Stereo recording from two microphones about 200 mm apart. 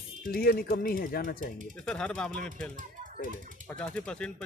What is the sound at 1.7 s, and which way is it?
Speech, 5° left (ahead or behind).